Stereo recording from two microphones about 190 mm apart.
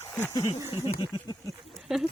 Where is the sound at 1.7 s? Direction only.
Centre (ahead or behind).